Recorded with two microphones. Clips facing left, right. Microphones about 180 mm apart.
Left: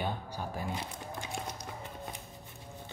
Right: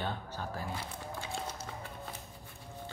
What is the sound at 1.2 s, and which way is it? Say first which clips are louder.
Run: even; 15° left (ahead or behind).